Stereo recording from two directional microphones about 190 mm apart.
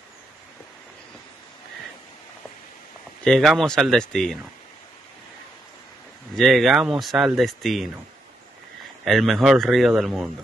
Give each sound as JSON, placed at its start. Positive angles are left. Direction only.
{"t": 3.3, "sound": "speech", "side_deg": 0}
{"t": 6.3, "sound": "speech", "side_deg": 0}
{"t": 9.0, "sound": "speech", "side_deg": 0}